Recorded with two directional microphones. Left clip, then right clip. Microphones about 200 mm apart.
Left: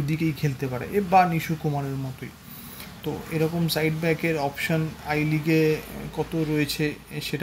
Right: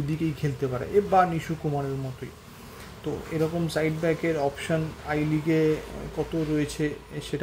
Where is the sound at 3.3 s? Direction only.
10° right (ahead or behind).